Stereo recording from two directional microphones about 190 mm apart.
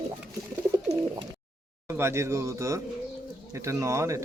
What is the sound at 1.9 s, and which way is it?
Speech, 15° right (ahead or behind).